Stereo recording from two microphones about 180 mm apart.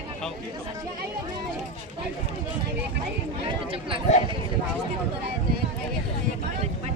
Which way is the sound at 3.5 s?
30° right (ahead or behind).